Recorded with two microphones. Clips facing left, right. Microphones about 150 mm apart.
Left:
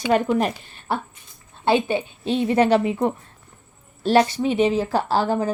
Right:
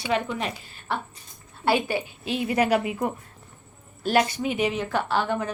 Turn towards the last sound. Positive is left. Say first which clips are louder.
# left 4 dB
turn(degrees=35)  # may be behind; listen again after turning